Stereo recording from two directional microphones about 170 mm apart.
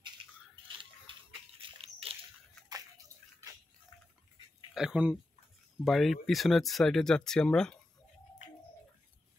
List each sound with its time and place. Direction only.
1.6 s dog: 35° right (ahead or behind)
2.7 s bathtub: 20° right (ahead or behind)
4.7 s speech: 5° right (ahead or behind)